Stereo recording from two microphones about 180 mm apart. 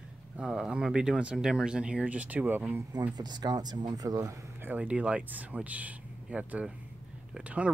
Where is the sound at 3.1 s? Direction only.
25° right (ahead or behind).